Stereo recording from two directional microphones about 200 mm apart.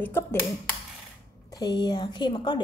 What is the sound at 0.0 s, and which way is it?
Speech, 10° left (ahead or behind).